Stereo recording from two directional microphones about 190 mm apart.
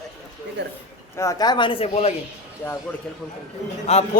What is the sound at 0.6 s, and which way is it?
Speech, 60° right (ahead or behind).